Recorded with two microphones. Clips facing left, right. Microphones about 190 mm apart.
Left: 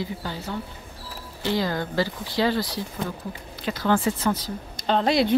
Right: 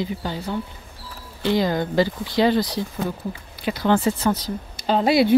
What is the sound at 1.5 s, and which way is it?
Speech, 20° right (ahead or behind).